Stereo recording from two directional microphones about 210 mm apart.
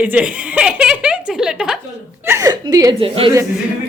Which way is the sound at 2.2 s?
15° right (ahead or behind).